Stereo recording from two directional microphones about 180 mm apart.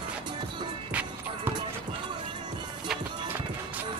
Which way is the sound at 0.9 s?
10° right (ahead or behind).